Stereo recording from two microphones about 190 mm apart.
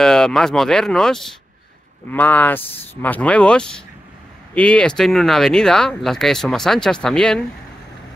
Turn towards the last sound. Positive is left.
turn(degrees=5)  # may be behind; listen again after turning